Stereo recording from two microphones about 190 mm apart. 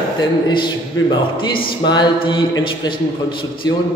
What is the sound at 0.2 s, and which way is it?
Speech, 25° left (ahead or behind).